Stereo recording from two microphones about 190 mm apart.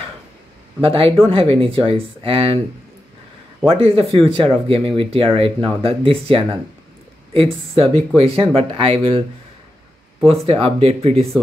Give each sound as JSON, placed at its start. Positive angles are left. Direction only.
{"t": 0.7, "sound": "speech", "side_deg": -30}
{"t": 3.6, "sound": "speech", "side_deg": -30}
{"t": 10.2, "sound": "speech", "side_deg": -30}